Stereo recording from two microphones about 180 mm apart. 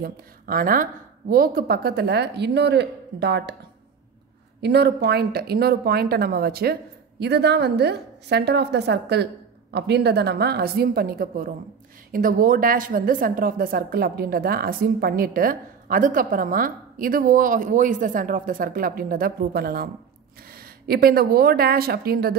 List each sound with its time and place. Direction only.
0.0 s a woman's voice: 55° right (ahead or behind)
4.6 s a woman's voice: 65° right (ahead or behind)